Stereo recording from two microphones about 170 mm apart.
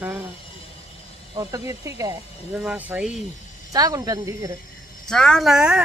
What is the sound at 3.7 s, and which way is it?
Speech, 20° right (ahead or behind).